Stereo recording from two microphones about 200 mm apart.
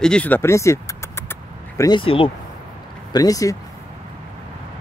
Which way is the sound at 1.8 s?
25° left (ahead or behind).